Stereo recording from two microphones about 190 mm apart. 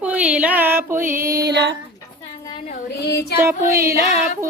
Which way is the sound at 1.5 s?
65° right (ahead or behind).